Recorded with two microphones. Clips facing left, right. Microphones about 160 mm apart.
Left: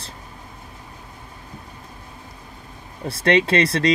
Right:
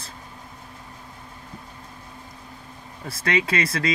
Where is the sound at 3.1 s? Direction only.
30° left (ahead or behind).